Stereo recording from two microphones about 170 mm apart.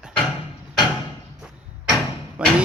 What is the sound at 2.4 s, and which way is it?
Speech, 5° right (ahead or behind).